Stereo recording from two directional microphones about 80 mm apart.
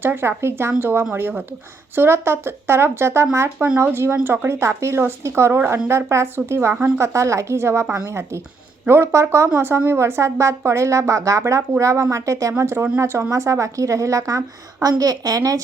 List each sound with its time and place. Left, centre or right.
0.0 s a woman's voice: right